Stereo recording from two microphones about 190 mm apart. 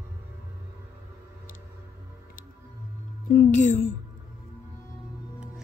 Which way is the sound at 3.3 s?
45° left (ahead or behind).